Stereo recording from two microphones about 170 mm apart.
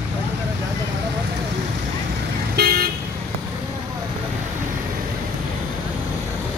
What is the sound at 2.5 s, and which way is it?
Vehicle, 65° right (ahead or behind).